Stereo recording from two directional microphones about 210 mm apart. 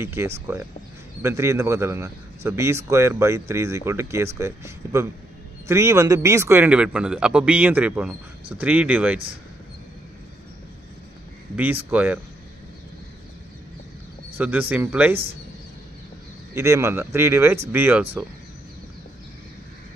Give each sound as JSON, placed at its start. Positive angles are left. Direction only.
{"t": 0.0, "sound": "speech", "side_deg": -10}
{"t": 11.5, "sound": "speech", "side_deg": -10}
{"t": 14.4, "sound": "speech", "side_deg": -10}
{"t": 16.5, "sound": "speech", "side_deg": -15}